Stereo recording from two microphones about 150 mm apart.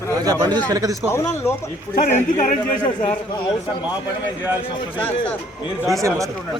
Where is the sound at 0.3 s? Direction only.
25° right (ahead or behind).